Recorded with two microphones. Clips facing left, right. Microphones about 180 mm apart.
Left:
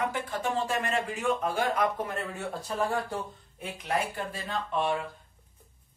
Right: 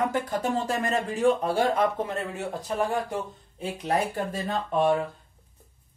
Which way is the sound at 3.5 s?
35° right (ahead or behind).